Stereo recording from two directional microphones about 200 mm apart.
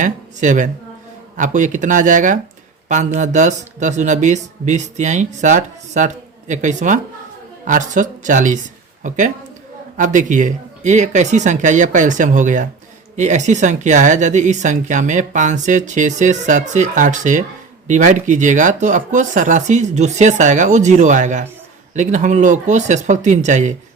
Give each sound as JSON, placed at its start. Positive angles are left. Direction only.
{"t": 0.0, "sound": "speech", "side_deg": -40}